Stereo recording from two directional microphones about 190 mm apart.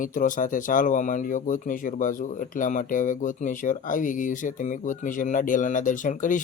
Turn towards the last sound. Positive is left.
turn(degrees=45)  # may be behind; listen again after turning